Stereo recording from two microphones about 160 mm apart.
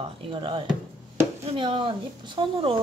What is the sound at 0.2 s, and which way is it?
A woman's voice, 30° right (ahead or behind).